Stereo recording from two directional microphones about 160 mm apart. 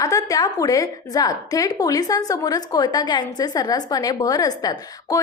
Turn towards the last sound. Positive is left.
turn(degrees=25)  # may be behind; listen again after turning